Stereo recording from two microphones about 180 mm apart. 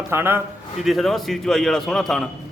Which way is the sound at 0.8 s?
Centre (ahead or behind).